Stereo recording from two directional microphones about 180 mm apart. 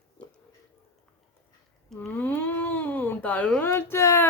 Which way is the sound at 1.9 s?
5° left (ahead or behind).